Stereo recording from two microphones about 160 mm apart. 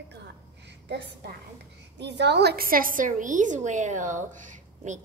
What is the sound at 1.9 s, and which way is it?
A woman's voice, 90° right.